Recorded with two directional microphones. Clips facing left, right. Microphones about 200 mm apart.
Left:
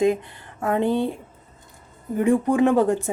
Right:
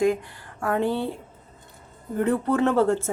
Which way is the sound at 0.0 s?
20° left (ahead or behind).